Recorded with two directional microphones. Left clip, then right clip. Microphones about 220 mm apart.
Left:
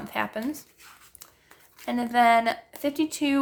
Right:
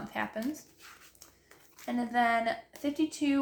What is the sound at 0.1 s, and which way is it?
Speech, 45° left (ahead or behind).